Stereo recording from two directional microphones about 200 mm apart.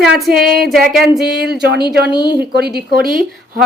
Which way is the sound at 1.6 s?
55° right (ahead or behind).